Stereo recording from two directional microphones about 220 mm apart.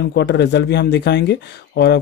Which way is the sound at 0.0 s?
50° left (ahead or behind).